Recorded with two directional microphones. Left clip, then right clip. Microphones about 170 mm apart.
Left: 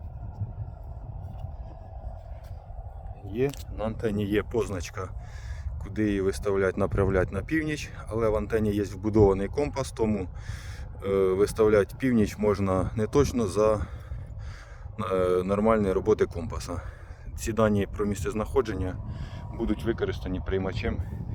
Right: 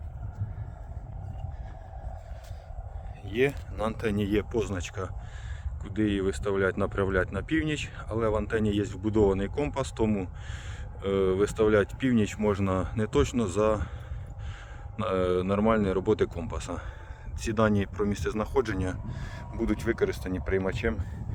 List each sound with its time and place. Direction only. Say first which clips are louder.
3.2 s speech: right 2 dB; 40° right (ahead or behind)
3.9 s speech: even; 5° right (ahead or behind)
4.5 s speech: left 1 dB; 30° left (ahead or behind)
14.9 s speech: left 2 dB; 35° left (ahead or behind)
19.0 s speech: right 2 dB; 25° right (ahead or behind)